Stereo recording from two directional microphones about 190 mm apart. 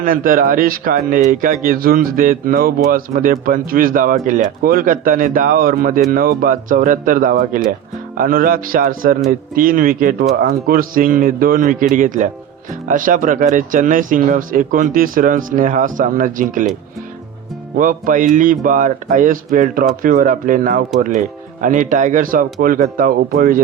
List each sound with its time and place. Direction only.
0.0 s speech: 45° right (ahead or behind)
17.7 s speech: 45° right (ahead or behind)